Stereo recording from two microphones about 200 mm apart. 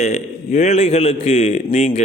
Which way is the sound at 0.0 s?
35° left (ahead or behind).